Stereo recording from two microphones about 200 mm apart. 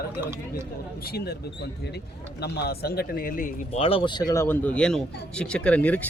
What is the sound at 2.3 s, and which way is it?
Speech, 55° left (ahead or behind).